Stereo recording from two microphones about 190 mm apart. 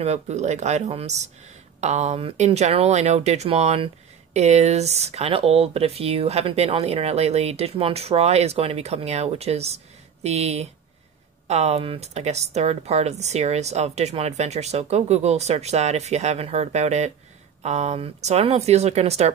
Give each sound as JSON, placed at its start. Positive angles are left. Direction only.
{"t": 0.0, "sound": "speech", "side_deg": -35}